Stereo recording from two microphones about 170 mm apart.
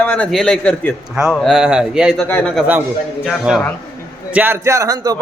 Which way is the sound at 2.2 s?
5° left (ahead or behind).